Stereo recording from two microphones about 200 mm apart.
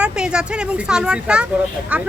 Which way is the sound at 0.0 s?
5° right (ahead or behind).